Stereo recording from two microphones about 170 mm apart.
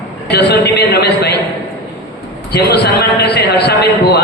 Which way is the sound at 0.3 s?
75° left (ahead or behind).